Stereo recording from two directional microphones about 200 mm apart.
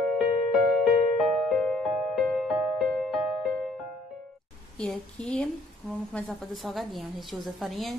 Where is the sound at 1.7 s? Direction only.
Centre (ahead or behind).